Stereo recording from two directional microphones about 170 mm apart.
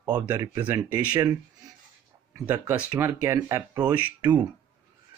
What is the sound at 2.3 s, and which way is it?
Speech, 15° right (ahead or behind).